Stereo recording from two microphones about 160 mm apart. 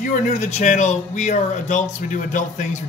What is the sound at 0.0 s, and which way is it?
Speech, 45° left (ahead or behind).